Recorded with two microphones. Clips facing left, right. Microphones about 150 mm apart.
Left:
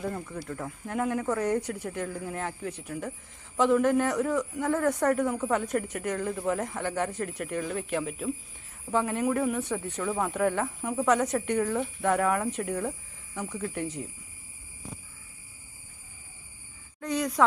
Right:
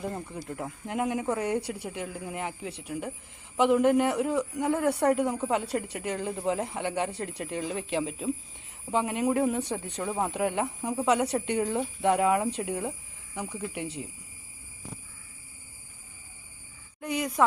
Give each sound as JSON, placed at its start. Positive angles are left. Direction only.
{"t": 0.0, "sound": "speech", "side_deg": -20}
{"t": 10.0, "sound": "speech", "side_deg": -25}
{"t": 17.0, "sound": "speech", "side_deg": -10}